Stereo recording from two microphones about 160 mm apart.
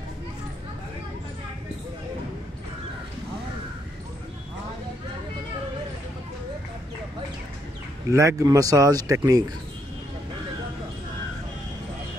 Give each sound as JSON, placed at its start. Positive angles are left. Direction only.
{"t": 8.1, "sound": "speech", "side_deg": -20}